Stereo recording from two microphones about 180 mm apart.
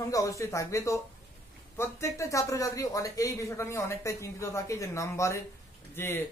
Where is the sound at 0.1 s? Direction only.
15° left (ahead or behind).